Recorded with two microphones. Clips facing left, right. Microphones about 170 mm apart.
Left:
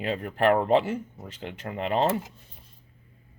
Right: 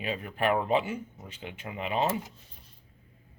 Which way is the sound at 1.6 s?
50° left (ahead or behind).